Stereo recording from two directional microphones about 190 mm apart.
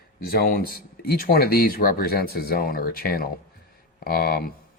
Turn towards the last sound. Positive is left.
turn(degrees=55)  # may be behind; listen again after turning